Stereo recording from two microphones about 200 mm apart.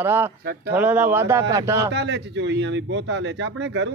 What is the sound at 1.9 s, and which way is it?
Speech, 60° right (ahead or behind).